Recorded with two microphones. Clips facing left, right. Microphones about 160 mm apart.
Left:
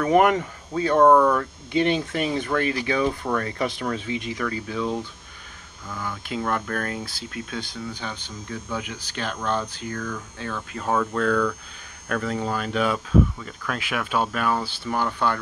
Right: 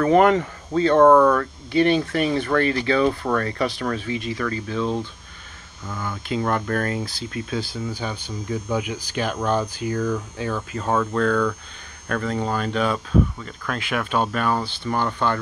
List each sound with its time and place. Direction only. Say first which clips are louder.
0.0 s speech: right 2 dB; 15° left (ahead or behind)
5.9 s speech: right 3 dB; centre (ahead or behind)
10.8 s speech: right 2 dB; centre (ahead or behind)